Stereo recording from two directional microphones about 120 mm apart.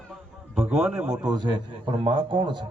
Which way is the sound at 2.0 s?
45° right (ahead or behind).